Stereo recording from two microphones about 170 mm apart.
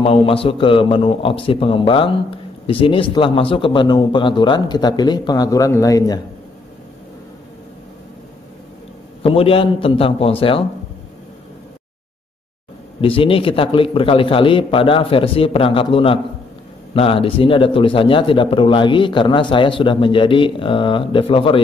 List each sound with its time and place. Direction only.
0.0 s a man's voice: 35° left (ahead or behind)
9.2 s a man's voice: 35° left (ahead or behind)
13.0 s a man's voice: 30° left (ahead or behind)